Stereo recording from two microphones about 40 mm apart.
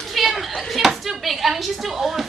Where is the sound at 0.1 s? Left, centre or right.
Centre.